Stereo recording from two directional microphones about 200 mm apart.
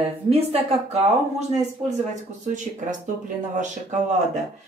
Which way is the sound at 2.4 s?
35° right (ahead or behind).